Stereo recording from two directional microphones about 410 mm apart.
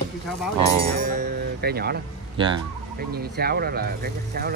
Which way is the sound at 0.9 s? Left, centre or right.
Right.